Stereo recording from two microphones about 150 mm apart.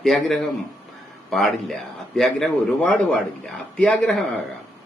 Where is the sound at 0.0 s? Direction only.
Centre (ahead or behind).